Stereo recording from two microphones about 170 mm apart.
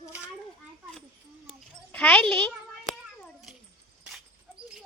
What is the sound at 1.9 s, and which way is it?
Speech, 10° left (ahead or behind).